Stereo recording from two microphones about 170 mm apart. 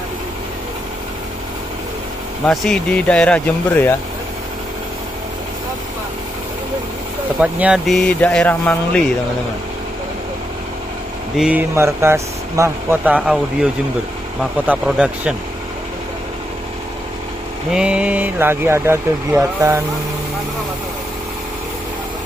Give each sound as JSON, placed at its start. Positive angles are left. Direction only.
{"t": 2.4, "sound": "speech", "side_deg": 5}
{"t": 7.3, "sound": "speech", "side_deg": -5}
{"t": 11.3, "sound": "speech", "side_deg": -5}
{"t": 11.7, "sound": "speech", "side_deg": -15}
{"t": 17.6, "sound": "speech", "side_deg": -5}